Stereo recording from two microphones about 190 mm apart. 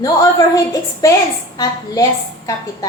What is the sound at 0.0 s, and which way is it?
A woman's voice, 20° left (ahead or behind).